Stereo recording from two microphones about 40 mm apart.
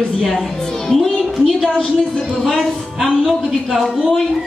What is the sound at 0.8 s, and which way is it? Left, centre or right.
Music, centre.